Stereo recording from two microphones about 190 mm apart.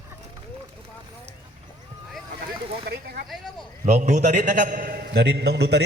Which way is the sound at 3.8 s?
40° right (ahead or behind).